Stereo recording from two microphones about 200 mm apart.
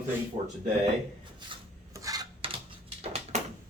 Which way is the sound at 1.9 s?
15° right (ahead or behind).